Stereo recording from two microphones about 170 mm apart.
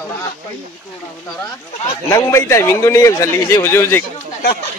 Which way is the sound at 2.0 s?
15° left (ahead or behind).